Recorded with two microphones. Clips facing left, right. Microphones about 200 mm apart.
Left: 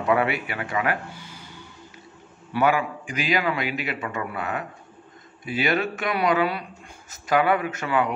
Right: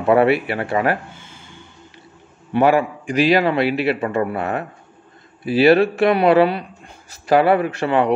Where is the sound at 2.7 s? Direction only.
35° right (ahead or behind).